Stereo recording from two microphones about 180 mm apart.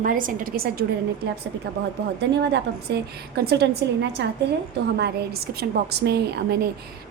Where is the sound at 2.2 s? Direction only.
70° right (ahead or behind).